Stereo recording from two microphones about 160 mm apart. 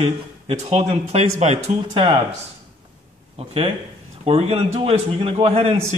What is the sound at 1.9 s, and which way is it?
Speech, 35° right (ahead or behind).